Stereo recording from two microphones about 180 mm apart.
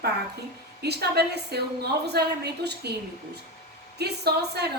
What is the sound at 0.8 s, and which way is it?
A woman's voice, 65° right (ahead or behind).